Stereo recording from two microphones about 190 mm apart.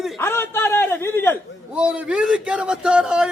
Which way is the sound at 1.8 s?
5° right (ahead or behind).